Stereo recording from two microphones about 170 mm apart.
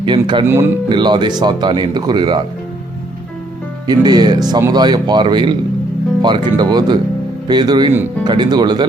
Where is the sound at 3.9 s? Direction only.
25° right (ahead or behind).